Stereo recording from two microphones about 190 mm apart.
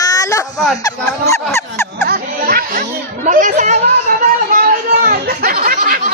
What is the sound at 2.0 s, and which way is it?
Music, 50° right (ahead or behind).